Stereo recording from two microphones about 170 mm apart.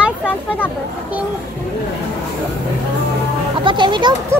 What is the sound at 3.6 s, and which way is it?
Speech, 30° right (ahead or behind).